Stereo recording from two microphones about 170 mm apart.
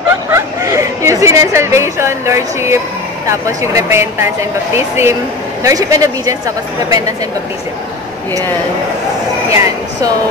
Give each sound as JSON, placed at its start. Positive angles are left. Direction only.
{"t": 0.3, "sound": "speech", "side_deg": -15}
{"t": 9.5, "sound": "speech", "side_deg": -15}